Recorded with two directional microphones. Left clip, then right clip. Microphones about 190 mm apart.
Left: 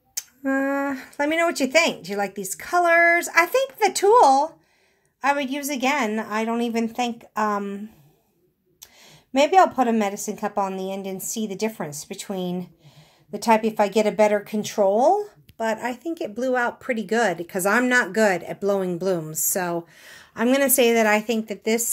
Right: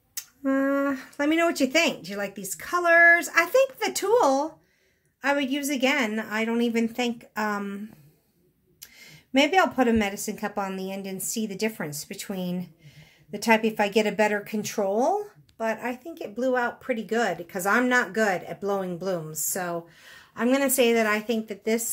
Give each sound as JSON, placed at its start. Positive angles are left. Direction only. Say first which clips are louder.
{"t": 0.1, "sound": "a woman's voice", "louder": "left 2 dB", "side_deg": 20}
{"t": 8.8, "sound": "a woman's voice", "louder": "even", "side_deg": 15}